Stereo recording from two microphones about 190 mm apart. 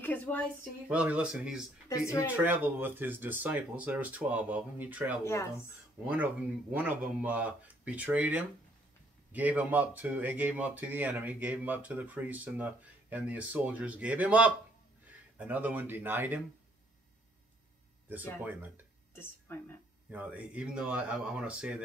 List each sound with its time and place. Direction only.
0.0 s a sound: 10° left (ahead or behind)
0.8 s speech: 5° right (ahead or behind)
1.9 s speech: 15° left (ahead or behind)
2.3 s speech: 10° right (ahead or behind)
5.2 s speech: 15° left (ahead or behind)
6.0 s speech: 10° right (ahead or behind)
18.4 s speech: 10° right (ahead or behind)
19.1 s speech: 10° left (ahead or behind)
20.1 s speech: 10° right (ahead or behind)